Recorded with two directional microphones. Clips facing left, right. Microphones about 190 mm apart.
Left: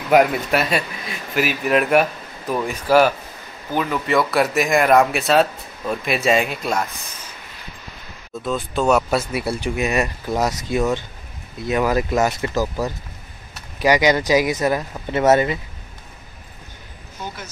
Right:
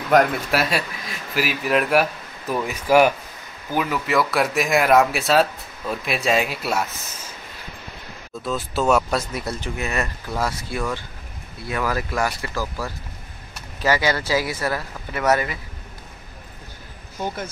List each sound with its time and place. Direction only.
0.1 s speech: 5° left (ahead or behind)
8.5 s speech: centre (ahead or behind); by 15.6 s 25° left (ahead or behind)